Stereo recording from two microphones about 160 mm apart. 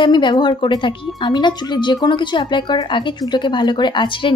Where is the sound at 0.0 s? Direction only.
30° left (ahead or behind).